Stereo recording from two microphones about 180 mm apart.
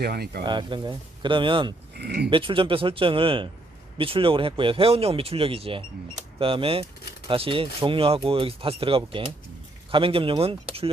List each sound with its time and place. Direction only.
0.0 s speech: 60° right (ahead or behind)
0.4 s speech: 25° right (ahead or behind)
2.0 s speech: 65° right (ahead or behind)
2.3 s speech: 30° right (ahead or behind)